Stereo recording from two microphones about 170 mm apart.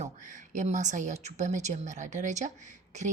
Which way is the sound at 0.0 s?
45° right (ahead or behind).